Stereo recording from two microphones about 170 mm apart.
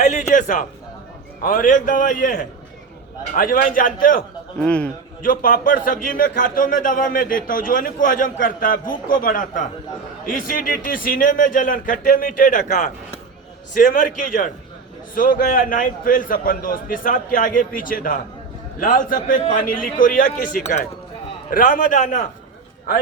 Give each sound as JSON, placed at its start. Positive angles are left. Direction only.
{"t": 0.0, "sound": "a sound", "side_deg": 45}
{"t": 1.4, "sound": "a man's voice", "side_deg": 55}
{"t": 4.6, "sound": "a man's voice", "side_deg": 5}
{"t": 5.2, "sound": "a man's voice", "side_deg": 55}